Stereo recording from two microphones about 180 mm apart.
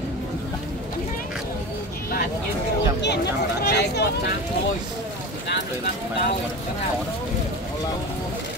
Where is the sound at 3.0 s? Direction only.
70° left (ahead or behind).